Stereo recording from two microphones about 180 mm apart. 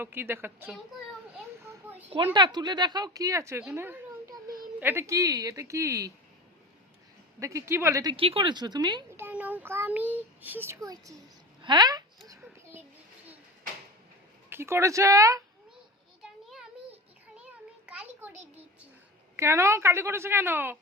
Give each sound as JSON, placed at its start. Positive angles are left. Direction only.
{"t": 0.0, "sound": "a woman's voice", "side_deg": -10}
{"t": 1.6, "sound": "children playing", "side_deg": -15}
{"t": 2.0, "sound": "speech", "side_deg": -25}
{"t": 7.3, "sound": "a woman's voice", "side_deg": -15}
{"t": 8.1, "sound": "speech", "side_deg": -30}
{"t": 9.1, "sound": "a child's voice", "side_deg": -10}
{"t": 11.6, "sound": "a sound", "side_deg": -25}
{"t": 14.5, "sound": "a woman's voice", "side_deg": -15}
{"t": 17.8, "sound": "a sound", "side_deg": -10}
{"t": 19.4, "sound": "a woman's voice", "side_deg": -15}